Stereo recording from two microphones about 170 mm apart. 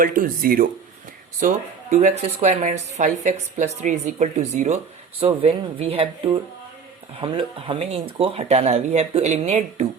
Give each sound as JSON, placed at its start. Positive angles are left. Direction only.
{"t": 0.0, "sound": "speech", "side_deg": -55}
{"t": 1.4, "sound": "speech", "side_deg": -45}